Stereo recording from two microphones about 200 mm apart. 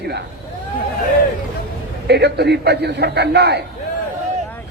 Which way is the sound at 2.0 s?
55° right (ahead or behind).